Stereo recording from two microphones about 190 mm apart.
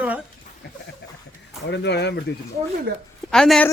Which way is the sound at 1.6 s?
65° left (ahead or behind).